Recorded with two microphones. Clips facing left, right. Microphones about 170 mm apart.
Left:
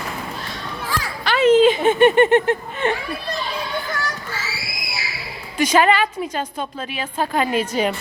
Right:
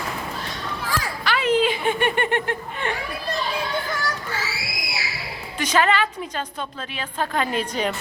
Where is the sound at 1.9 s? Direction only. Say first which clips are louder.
Left 9 dB; 25° left (ahead or behind).